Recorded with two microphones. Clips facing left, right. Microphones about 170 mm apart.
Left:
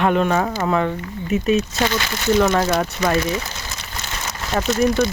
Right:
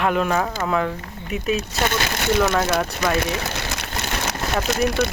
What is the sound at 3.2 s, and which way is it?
Rain, 65° right (ahead or behind).